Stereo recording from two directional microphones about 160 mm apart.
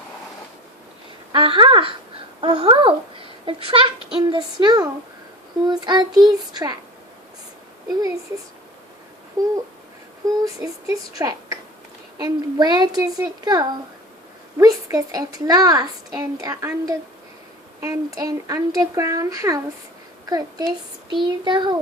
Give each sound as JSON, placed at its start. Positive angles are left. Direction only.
{"t": 1.3, "sound": "a child's voice", "side_deg": -30}
{"t": 9.4, "sound": "a child's voice", "side_deg": -25}